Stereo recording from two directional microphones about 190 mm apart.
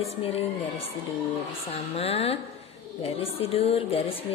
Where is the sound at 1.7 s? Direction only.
30° left (ahead or behind).